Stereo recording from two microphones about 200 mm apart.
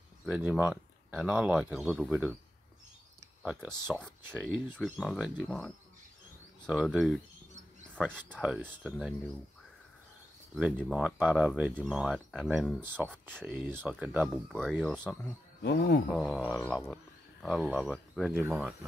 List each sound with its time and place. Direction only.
0.2 s speech: 5° right (ahead or behind)
3.8 s speech: centre (ahead or behind)
8.3 s speech: 10° right (ahead or behind)
10.5 s speech: 5° right (ahead or behind)
12.8 s speech: 10° right (ahead or behind)
14.5 s speech: 5° left (ahead or behind)
15.6 s speech: 55° left (ahead or behind)
16.1 s speech: centre (ahead or behind)
16.6 s speech: 5° left (ahead or behind)